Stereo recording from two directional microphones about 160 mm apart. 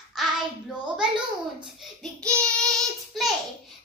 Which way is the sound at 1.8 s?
5° left (ahead or behind).